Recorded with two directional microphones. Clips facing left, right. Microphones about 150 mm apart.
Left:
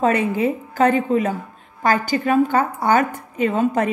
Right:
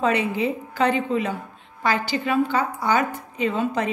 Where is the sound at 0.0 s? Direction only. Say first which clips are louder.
Left 4 dB; 45° left (ahead or behind).